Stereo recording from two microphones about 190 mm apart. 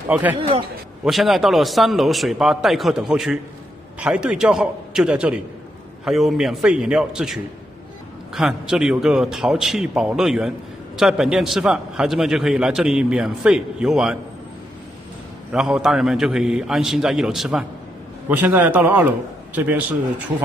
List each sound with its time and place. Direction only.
0.1 s a man's voice: 10° right (ahead or behind)
0.4 s a man's voice: 30° right (ahead or behind)
1.0 s a man's voice: centre (ahead or behind)
15.5 s a man's voice: 5° right (ahead or behind)